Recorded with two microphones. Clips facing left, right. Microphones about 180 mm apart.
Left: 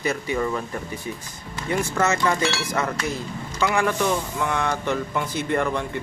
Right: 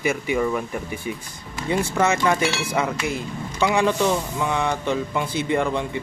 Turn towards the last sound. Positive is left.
turn(degrees=-15)  # may be behind; listen again after turning